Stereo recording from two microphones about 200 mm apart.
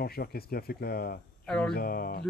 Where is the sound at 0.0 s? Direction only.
50° left (ahead or behind).